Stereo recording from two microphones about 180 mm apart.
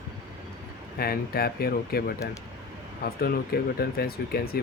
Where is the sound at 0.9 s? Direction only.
60° left (ahead or behind).